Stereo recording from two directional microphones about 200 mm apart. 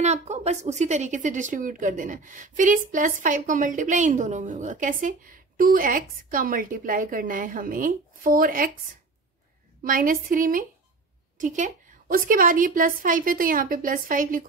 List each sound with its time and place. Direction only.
0.0 s a woman's voice: 35° right (ahead or behind)
9.8 s a woman's voice: 45° right (ahead or behind)